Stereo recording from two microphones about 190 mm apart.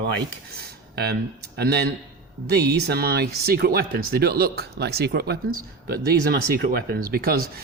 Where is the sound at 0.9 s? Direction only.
55° right (ahead or behind).